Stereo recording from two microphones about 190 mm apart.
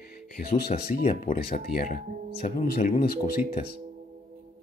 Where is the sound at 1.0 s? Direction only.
40° left (ahead or behind).